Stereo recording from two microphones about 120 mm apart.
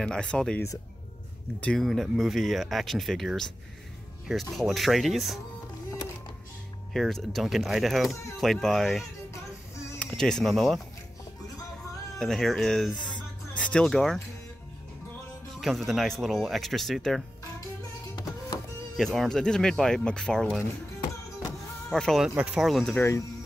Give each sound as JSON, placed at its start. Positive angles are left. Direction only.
{"t": 0.0, "sound": "speech", "side_deg": 5}
{"t": 1.6, "sound": "speech", "side_deg": 5}
{"t": 6.9, "sound": "speech", "side_deg": 5}
{"t": 12.2, "sound": "speech", "side_deg": 5}
{"t": 15.5, "sound": "speech", "side_deg": 0}
{"t": 18.1, "sound": "music", "side_deg": 30}
{"t": 18.9, "sound": "speech", "side_deg": 0}
{"t": 21.9, "sound": "speech", "side_deg": 0}
{"t": 22.9, "sound": "speech", "side_deg": 25}